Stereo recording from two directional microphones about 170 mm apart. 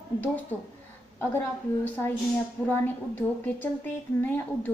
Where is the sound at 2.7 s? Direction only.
10° left (ahead or behind).